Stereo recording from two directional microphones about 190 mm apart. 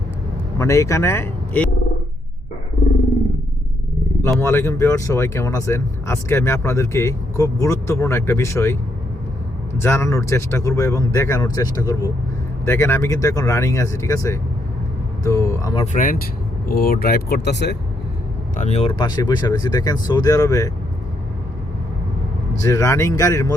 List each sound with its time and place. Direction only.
0.6 s speech: 15° left (ahead or behind)
4.2 s speech: 15° left (ahead or behind)
15.8 s speech: 40° left (ahead or behind); by 17.7 s 65° left (ahead or behind)
18.5 s speech: 35° left (ahead or behind); by 20.7 s 20° left (ahead or behind)
22.6 s speech: 15° left (ahead or behind)